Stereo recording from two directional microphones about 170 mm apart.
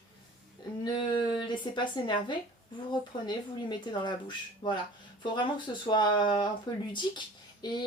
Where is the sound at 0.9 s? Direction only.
30° left (ahead or behind).